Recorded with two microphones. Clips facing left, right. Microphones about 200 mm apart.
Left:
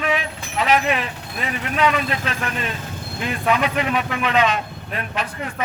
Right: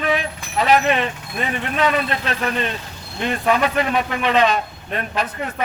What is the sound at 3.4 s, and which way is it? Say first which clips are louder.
Speech: right 1 dB; 35° right (ahead or behind).